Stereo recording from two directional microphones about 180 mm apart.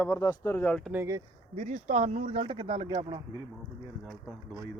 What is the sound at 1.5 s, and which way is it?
Speech, 40° right (ahead or behind).